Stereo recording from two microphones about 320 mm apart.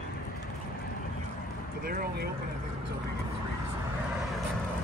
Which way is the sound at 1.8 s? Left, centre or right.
Right.